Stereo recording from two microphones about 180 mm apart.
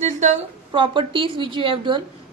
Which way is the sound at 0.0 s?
40° right (ahead or behind).